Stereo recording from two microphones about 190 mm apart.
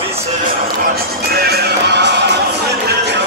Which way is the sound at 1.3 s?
55° right (ahead or behind).